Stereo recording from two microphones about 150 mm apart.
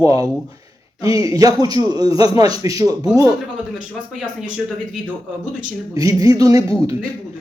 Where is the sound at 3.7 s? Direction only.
5° right (ahead or behind).